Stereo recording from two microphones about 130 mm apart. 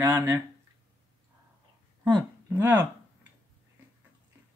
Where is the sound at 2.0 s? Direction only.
25° right (ahead or behind).